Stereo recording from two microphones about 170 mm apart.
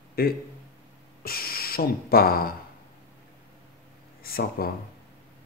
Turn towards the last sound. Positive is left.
turn(degrees=60)  # may be behind; listen again after turning